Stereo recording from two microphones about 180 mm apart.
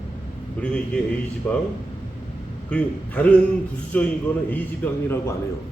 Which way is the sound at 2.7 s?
5° left (ahead or behind).